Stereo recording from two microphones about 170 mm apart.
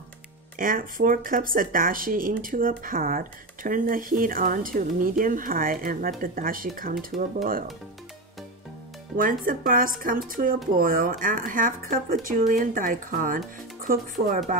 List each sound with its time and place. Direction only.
0.6 s speech: 55° right (ahead or behind)
9.1 s speech: 55° right (ahead or behind)